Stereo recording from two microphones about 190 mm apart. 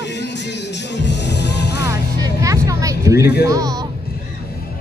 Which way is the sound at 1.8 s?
15° right (ahead or behind).